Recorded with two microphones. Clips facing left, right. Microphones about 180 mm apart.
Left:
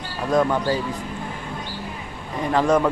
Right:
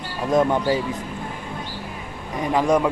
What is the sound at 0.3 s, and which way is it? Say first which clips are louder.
Speech: right 1 dB; 20° right (ahead or behind).